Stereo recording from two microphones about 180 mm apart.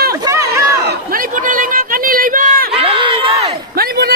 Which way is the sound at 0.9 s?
50° right (ahead or behind).